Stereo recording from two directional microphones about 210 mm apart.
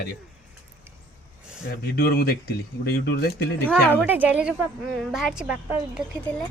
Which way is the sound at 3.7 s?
10° right (ahead or behind).